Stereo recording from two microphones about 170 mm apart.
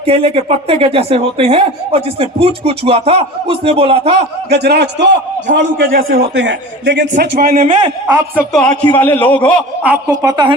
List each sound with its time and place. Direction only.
0.0 s speech: 35° right (ahead or behind)
4.4 s a man's voice: 75° right (ahead or behind)
6.3 s a man's voice: 90° right; by 7.7 s 55° right (ahead or behind)
7.7 s a man's voice: 25° right (ahead or behind)
8.5 s a man's voice: 5° left (ahead or behind)
9.8 s a woman's voice: 15° right (ahead or behind)